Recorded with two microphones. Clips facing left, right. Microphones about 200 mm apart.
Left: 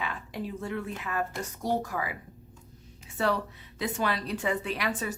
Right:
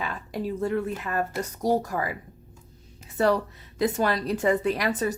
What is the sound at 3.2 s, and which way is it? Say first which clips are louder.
A woman's voice: right 6 dB; 40° right (ahead or behind).